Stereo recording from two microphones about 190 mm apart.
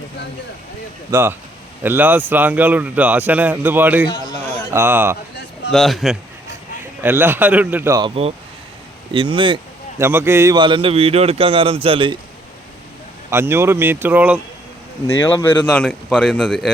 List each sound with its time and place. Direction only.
1.1 s speech: 10° right (ahead or behind)
5.7 s a man's voice: centre (ahead or behind)
7.0 s speech: 10° right (ahead or behind)
9.1 s a man's voice: 25° right (ahead or behind)
10.0 s a man's voice: 15° right (ahead or behind); by 12.1 s 30° right (ahead or behind)
13.3 s speech: 15° right (ahead or behind)
15.0 s a man's voice: 15° left (ahead or behind)